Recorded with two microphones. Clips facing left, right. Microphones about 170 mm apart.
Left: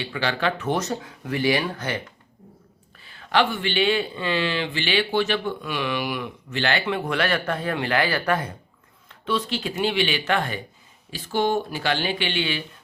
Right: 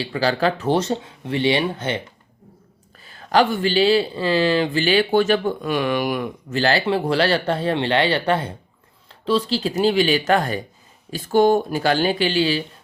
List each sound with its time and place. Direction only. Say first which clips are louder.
0.0 s speech: right 5 dB; 35° right (ahead or behind)
3.0 s speech: right 4 dB; 40° right (ahead or behind)